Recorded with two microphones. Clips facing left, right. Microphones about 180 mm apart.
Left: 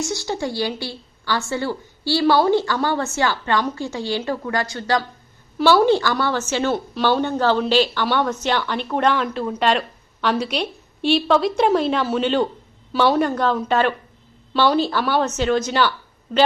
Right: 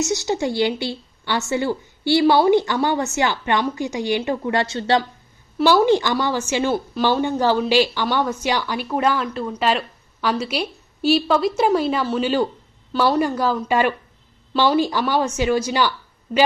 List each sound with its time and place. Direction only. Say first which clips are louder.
0.0 s a woman's voice: right 3 dB; 20° right (ahead or behind)